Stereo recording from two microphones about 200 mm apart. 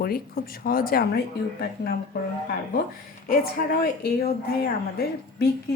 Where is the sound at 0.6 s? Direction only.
45° left (ahead or behind).